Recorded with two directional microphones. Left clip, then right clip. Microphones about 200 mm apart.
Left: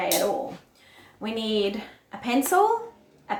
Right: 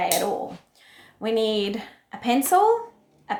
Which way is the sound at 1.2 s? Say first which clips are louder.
Right 3 dB; 45° right (ahead or behind).